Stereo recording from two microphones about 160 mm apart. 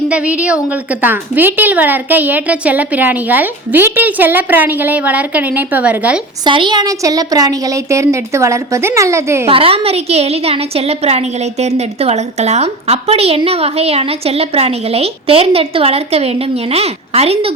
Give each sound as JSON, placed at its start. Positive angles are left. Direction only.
{"t": 0.1, "sound": "a woman's voice", "side_deg": -10}
{"t": 6.4, "sound": "a woman's voice", "side_deg": -30}
{"t": 9.5, "sound": "a woman's voice", "side_deg": -35}